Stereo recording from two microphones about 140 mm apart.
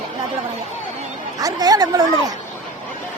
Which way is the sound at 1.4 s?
25° right (ahead or behind).